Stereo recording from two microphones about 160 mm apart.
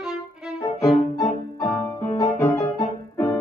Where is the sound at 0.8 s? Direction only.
Centre (ahead or behind).